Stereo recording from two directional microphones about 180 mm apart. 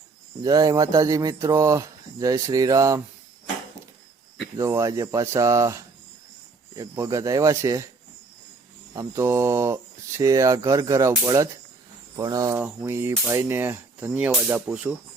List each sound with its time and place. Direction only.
0.4 s speech: 20° right (ahead or behind)
4.5 s speech: 15° right (ahead or behind)
8.9 s speech: 15° right (ahead or behind)
12.1 s speech: 20° right (ahead or behind)